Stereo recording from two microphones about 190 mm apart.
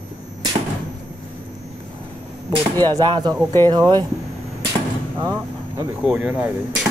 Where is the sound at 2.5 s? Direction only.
25° right (ahead or behind).